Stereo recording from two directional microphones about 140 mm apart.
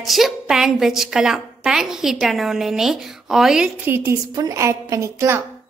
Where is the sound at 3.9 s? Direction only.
15° right (ahead or behind).